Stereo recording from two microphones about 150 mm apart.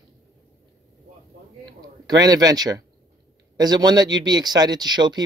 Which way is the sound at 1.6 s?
25° right (ahead or behind).